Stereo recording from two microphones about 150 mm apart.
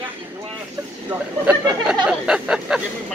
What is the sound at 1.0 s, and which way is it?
Speech, 10° right (ahead or behind).